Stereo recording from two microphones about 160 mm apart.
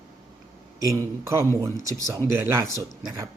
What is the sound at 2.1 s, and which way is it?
Speech, 15° right (ahead or behind).